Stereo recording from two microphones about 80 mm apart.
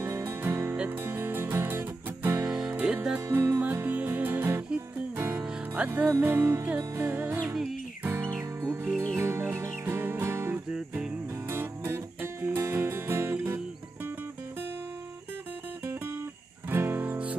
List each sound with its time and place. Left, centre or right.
0.0 s music: right
2.4 s music: centre
3.3 s music: right
7.4 s music: centre
8.0 s music: right
10.7 s music: centre
11.4 s music: right
16.7 s music: right